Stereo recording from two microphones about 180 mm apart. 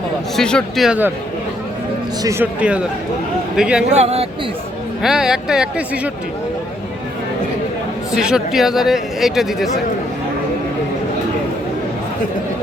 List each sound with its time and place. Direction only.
0.3 s speech: 5° left (ahead or behind)
2.2 s speech: 10° right (ahead or behind)
3.9 s speech: 35° right (ahead or behind)
5.0 s speech: 5° right (ahead or behind)
8.1 s speech: 5° right (ahead or behind)